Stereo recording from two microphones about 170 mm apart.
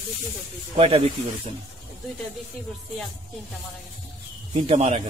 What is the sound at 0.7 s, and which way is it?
Speech, 35° right (ahead or behind).